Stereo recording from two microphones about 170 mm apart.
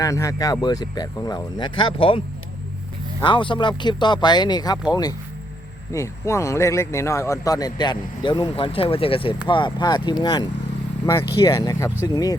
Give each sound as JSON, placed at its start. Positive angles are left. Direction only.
{"t": 0.0, "sound": "speech", "side_deg": 20}